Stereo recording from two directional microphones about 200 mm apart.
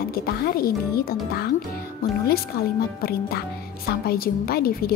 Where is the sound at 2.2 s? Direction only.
50° left (ahead or behind).